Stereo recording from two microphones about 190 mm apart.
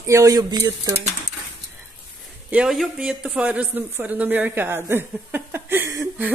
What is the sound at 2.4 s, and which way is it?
Speech, 5° right (ahead or behind).